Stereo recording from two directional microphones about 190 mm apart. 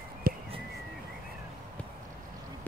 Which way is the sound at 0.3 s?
50° right (ahead or behind).